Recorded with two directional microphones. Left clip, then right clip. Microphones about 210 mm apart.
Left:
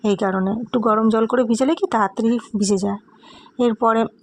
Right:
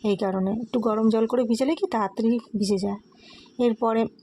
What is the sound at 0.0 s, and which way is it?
Speech, 20° left (ahead or behind).